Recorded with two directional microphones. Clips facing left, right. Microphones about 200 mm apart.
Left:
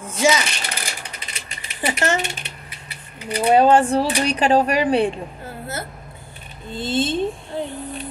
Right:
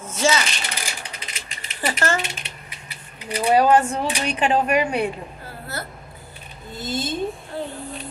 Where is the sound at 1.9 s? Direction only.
20° left (ahead or behind).